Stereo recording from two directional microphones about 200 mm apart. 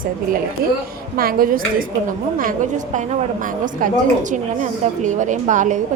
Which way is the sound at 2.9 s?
40° right (ahead or behind).